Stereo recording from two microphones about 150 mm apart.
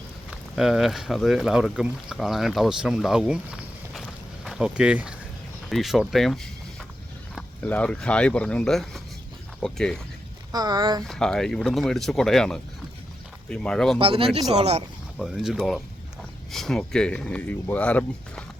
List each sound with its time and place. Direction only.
0.3 s speech: centre (ahead or behind)
10.5 s speech: 25° right (ahead or behind)
11.0 s speech: 5° left (ahead or behind)
14.0 s speech: 40° right (ahead or behind)
15.2 s speech: centre (ahead or behind)